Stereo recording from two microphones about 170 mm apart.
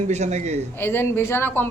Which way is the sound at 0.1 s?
40° right (ahead or behind).